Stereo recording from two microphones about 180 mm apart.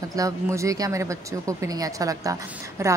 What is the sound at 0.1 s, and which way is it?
Speech, 15° right (ahead or behind).